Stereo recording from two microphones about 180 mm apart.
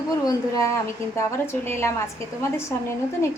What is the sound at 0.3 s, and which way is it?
A woman's voice, 20° left (ahead or behind).